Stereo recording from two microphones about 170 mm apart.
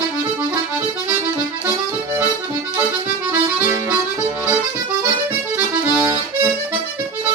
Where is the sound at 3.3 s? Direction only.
10° right (ahead or behind).